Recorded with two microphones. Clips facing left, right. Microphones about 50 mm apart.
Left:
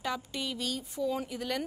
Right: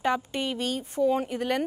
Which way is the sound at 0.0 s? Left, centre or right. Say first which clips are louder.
Right 8 dB; right.